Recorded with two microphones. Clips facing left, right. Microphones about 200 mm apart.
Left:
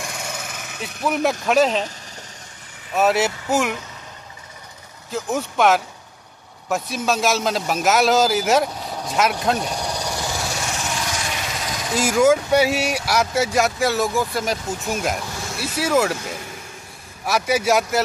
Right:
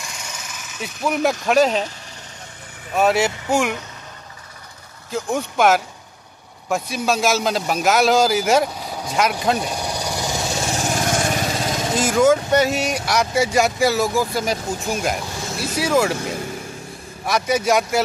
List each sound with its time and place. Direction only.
0.0 s a sound: 55° left (ahead or behind)
0.8 s speech: centre (ahead or behind)
2.9 s speech: centre (ahead or behind)
5.1 s a man's voice: centre (ahead or behind); by 10.8 s 25° right (ahead or behind)
10.8 s vehicle: 45° right (ahead or behind)
12.0 s speech: 10° left (ahead or behind)
17.3 s speech: 5° left (ahead or behind)